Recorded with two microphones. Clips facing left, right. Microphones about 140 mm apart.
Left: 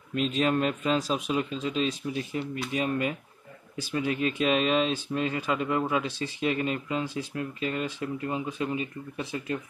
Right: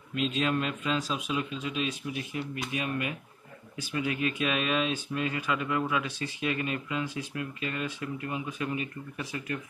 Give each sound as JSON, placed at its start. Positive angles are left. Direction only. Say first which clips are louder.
{"t": 0.1, "sound": "speech", "louder": "left 3 dB", "side_deg": 40}